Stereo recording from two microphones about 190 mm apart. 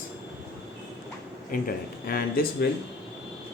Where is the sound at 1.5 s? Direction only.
45° left (ahead or behind).